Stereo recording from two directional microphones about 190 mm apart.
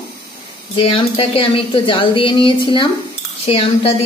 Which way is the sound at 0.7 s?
30° left (ahead or behind).